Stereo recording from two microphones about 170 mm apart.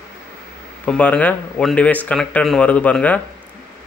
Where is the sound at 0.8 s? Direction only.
10° left (ahead or behind).